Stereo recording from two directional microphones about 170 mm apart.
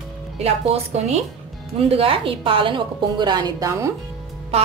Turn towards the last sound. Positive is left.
turn(degrees=-35)  # may be behind; listen again after turning